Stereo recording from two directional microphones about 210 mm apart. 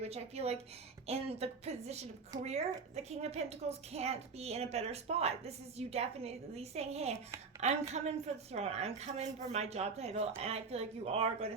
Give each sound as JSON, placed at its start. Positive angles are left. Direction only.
{"t": 0.0, "sound": "a woman's voice", "side_deg": -30}